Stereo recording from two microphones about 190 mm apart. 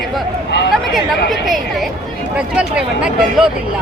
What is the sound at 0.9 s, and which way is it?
Speech, centre (ahead or behind).